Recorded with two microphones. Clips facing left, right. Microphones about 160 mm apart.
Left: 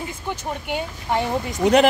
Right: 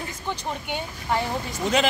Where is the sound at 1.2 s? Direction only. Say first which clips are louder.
Left 5 dB; 65° left (ahead or behind).